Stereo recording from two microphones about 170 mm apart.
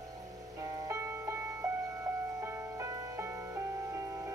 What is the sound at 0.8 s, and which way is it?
Music, 20° right (ahead or behind).